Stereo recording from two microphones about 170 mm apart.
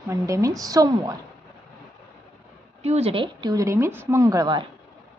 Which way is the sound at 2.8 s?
35° right (ahead or behind).